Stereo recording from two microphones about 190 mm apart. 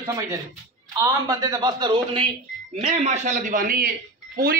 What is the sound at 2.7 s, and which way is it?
A man's voice, 35° right (ahead or behind).